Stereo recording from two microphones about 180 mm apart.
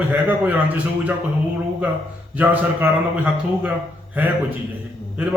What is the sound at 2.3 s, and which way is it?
Speech, 10° right (ahead or behind).